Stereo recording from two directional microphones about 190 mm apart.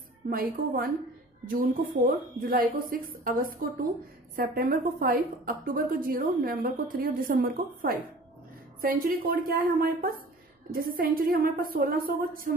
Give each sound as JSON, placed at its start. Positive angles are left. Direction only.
{"t": 0.3, "sound": "a woman's voice", "side_deg": -50}